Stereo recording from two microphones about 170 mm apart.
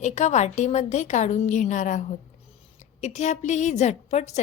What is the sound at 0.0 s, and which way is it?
A woman's voice, 45° left (ahead or behind).